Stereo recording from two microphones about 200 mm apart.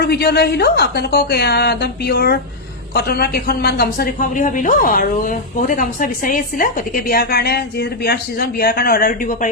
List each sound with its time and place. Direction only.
0.0 s a woman's voice: 50° left (ahead or behind)